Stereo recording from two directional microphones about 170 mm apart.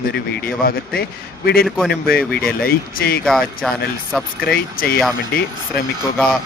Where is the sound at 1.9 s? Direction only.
65° left (ahead or behind).